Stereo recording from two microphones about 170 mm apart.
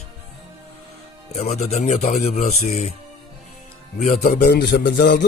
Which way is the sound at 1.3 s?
40° left (ahead or behind).